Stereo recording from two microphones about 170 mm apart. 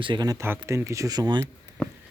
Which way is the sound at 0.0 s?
25° right (ahead or behind).